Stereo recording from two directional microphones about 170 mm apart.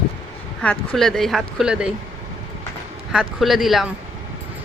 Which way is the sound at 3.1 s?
Centre (ahead or behind).